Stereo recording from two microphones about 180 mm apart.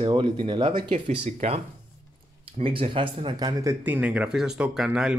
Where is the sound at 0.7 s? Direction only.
40° right (ahead or behind).